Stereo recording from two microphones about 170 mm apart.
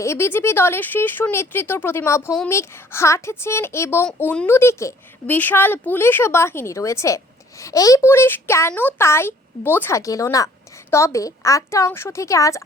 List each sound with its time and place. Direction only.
0.0 s speech: 15° left (ahead or behind)